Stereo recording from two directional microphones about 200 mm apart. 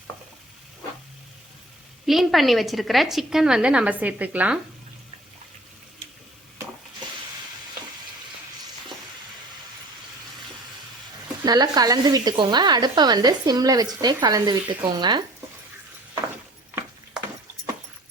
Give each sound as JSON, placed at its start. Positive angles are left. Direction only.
{"t": 2.0, "sound": "a woman's voice", "side_deg": 0}
{"t": 11.4, "sound": "speech", "side_deg": -20}